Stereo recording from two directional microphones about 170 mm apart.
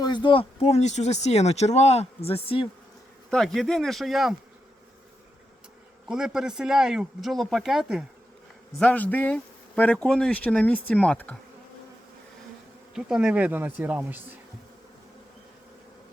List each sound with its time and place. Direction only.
0.0 s speech: 25° left (ahead or behind)
3.2 s speech: 5° left (ahead or behind)
6.1 s speech: 5° right (ahead or behind)
8.8 s speech: 10° left (ahead or behind)
12.9 s speech: 5° right (ahead or behind)